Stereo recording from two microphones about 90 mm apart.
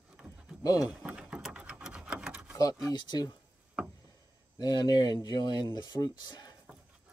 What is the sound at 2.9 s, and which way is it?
Speech, 55° left (ahead or behind).